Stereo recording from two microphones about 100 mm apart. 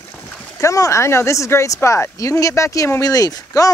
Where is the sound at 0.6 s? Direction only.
30° left (ahead or behind).